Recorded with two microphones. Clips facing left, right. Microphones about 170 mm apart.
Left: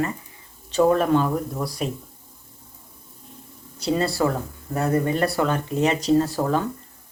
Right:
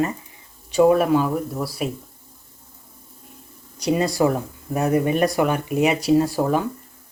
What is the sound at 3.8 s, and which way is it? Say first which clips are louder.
Speech: right 3 dB; 15° right (ahead or behind).